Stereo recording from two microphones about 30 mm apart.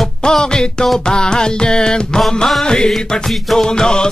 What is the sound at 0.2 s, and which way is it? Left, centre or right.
Music, left.